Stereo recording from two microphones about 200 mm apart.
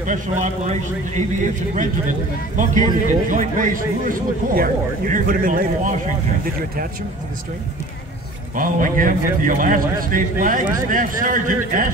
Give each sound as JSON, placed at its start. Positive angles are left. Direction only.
{"t": 0.0, "sound": "speech", "side_deg": -40}
{"t": 2.5, "sound": "a man's voice", "side_deg": -40}
{"t": 8.5, "sound": "a man's voice", "side_deg": -40}